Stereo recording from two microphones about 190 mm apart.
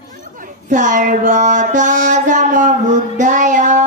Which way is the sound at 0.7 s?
40° right (ahead or behind).